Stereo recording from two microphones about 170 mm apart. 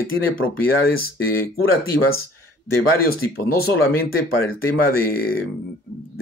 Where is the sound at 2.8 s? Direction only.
60° left (ahead or behind).